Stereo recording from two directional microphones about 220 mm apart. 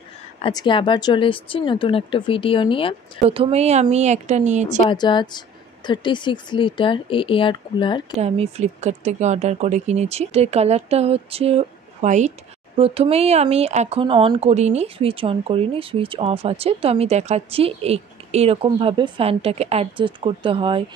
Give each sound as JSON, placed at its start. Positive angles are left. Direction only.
{"t": 0.4, "sound": "speech", "side_deg": 20}
{"t": 3.3, "sound": "speech", "side_deg": -25}
{"t": 4.8, "sound": "speech", "side_deg": 20}
{"t": 8.2, "sound": "speech", "side_deg": -30}